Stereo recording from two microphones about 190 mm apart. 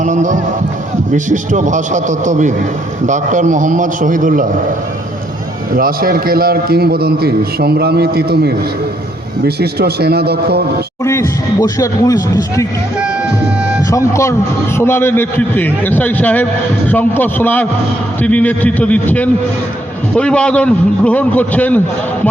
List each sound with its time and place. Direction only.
0.0 s a man's voice: 40° right (ahead or behind)
5.7 s a man's voice: 50° right (ahead or behind)
11.0 s a man's voice: 15° left (ahead or behind)
14.1 s a man's voice: 15° left (ahead or behind)